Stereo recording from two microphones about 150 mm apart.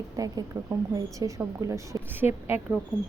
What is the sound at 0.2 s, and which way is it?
Speech, 25° right (ahead or behind).